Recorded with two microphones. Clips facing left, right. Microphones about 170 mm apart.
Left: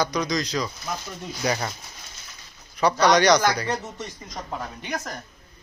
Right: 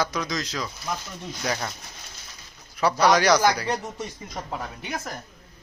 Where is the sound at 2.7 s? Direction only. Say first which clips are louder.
Left 1 dB; 5° right (ahead or behind).